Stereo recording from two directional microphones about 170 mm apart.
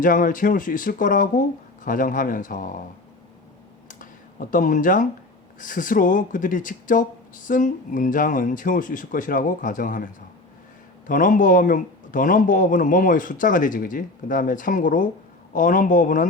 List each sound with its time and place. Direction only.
0.0 s a man's voice: 55° left (ahead or behind)
3.8 s a sound: 55° left (ahead or behind)
5.5 s a man's voice: 50° left (ahead or behind)